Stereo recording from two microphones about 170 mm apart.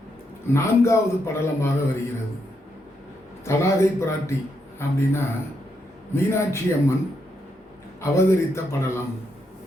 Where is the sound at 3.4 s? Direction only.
15° left (ahead or behind).